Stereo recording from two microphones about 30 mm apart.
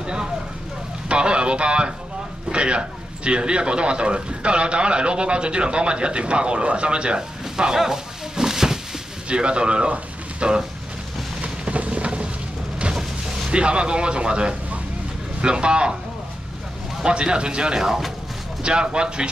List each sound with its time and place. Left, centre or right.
0.0 s vehicle: right
1.0 s a sound: right
2.5 s a man's voice: right; by 8.7 s centre
9.3 s speech: right
11.4 s a sound: right
13.5 s speech: right
17.0 s speech: right
17.7 s speech: centre
18.6 s speech: right